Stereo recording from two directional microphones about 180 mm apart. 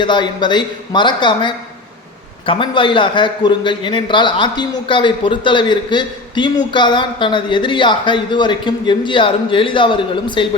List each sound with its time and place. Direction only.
0.0 s a man's voice: 25° left (ahead or behind)